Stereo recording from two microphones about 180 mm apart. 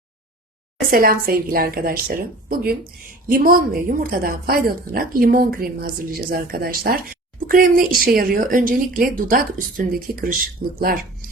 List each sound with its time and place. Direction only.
0.9 s a woman's voice: 55° right (ahead or behind)